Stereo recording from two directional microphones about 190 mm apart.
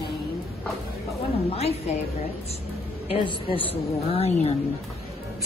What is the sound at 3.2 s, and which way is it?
A man's voice, 25° left (ahead or behind).